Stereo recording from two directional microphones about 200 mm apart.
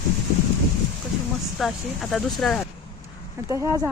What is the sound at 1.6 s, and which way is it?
Speech, centre (ahead or behind).